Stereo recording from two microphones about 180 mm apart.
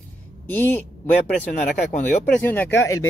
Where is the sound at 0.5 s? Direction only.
10° left (ahead or behind).